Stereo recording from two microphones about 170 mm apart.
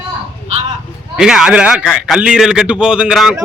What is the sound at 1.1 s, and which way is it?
A man's voice, 5° right (ahead or behind).